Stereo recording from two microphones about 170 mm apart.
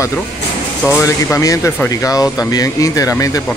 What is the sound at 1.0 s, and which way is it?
Speech, 20° left (ahead or behind).